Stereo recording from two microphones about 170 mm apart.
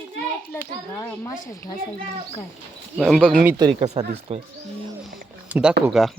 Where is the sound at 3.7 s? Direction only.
40° right (ahead or behind).